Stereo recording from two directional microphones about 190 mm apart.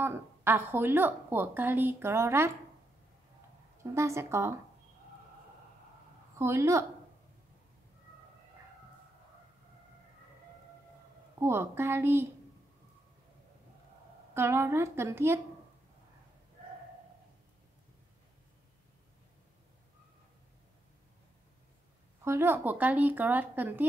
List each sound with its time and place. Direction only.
0.0 s a woman's voice: 10° right (ahead or behind)
3.9 s a woman's voice: 15° right (ahead or behind)
6.3 s a woman's voice: 15° right (ahead or behind)
11.4 s a woman's voice: 15° right (ahead or behind)
14.3 s a woman's voice: 10° right (ahead or behind)
22.2 s a woman's voice: 15° right (ahead or behind)